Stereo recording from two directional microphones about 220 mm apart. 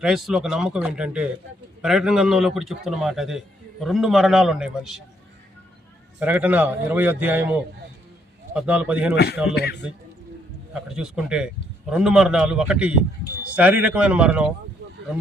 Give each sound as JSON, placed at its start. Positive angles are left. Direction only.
{"t": 0.0, "sound": "a man's voice", "side_deg": 0}
{"t": 6.1, "sound": "a man's voice", "side_deg": -5}
{"t": 9.1, "sound": "speech", "side_deg": 50}
{"t": 10.8, "sound": "a man's voice", "side_deg": -5}